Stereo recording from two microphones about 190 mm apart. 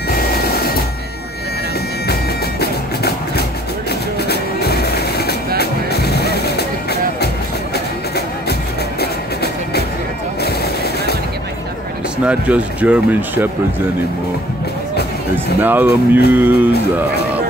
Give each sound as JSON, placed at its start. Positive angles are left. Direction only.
{"t": 2.6, "sound": "music", "side_deg": 55}
{"t": 9.0, "sound": "music", "side_deg": 55}
{"t": 10.4, "sound": "vehicle", "side_deg": 55}
{"t": 12.3, "sound": "speech", "side_deg": -5}
{"t": 15.3, "sound": "speech", "side_deg": -10}